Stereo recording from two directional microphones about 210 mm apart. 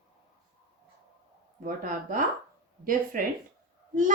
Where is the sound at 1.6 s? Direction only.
40° right (ahead or behind).